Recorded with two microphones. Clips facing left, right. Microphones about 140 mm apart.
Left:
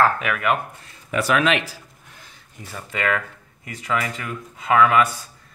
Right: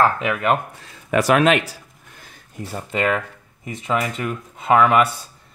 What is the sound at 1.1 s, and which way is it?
Speech, 50° right (ahead or behind).